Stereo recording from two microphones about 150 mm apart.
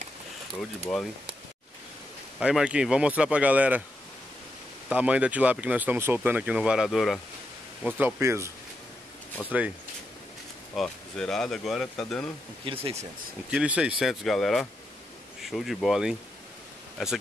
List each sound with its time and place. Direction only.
2.4 s speech: 5° right (ahead or behind)
4.8 s speech: 10° right (ahead or behind)
7.8 s speech: 15° right (ahead or behind)
10.7 s speech: 5° left (ahead or behind)
12.6 s speech: 40° right (ahead or behind)
13.5 s speech: 5° right (ahead or behind)